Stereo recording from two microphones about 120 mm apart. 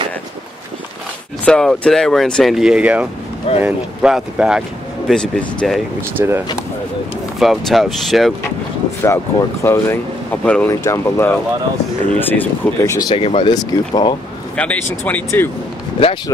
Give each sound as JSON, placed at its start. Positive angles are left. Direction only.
{"t": 1.4, "sound": "speech", "side_deg": 5}
{"t": 5.1, "sound": "speech", "side_deg": 5}
{"t": 6.1, "sound": "speech", "side_deg": -20}
{"t": 7.3, "sound": "speech", "side_deg": 0}
{"t": 9.0, "sound": "speech", "side_deg": 20}
{"t": 10.7, "sound": "speech", "side_deg": 25}
{"t": 13.1, "sound": "speech", "side_deg": 55}
{"t": 13.5, "sound": "speech", "side_deg": 35}
{"t": 14.6, "sound": "speech", "side_deg": 10}